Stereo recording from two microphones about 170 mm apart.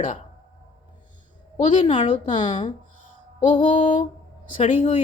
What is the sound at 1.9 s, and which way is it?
Speech, 40° left (ahead or behind).